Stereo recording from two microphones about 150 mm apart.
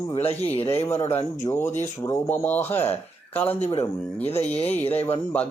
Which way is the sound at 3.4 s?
40° left (ahead or behind).